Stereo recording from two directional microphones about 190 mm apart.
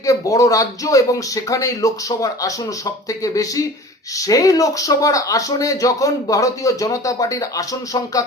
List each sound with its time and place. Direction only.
0.0 s a man's voice: 15° left (ahead or behind)